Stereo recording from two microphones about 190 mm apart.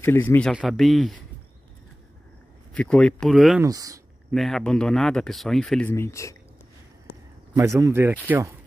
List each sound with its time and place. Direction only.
0.0 s speech: 10° left (ahead or behind)
0.5 s speech: centre (ahead or behind)
2.7 s speech: 5° left (ahead or behind)
3.6 s speech: 20° right (ahead or behind)
4.3 s speech: centre (ahead or behind)
7.5 s speech: 15° right (ahead or behind)